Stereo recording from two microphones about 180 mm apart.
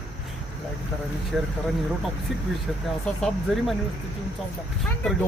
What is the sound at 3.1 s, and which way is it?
Speech, 5° left (ahead or behind).